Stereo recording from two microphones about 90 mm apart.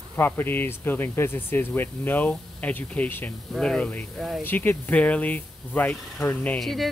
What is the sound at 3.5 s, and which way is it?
Speech, 10° left (ahead or behind).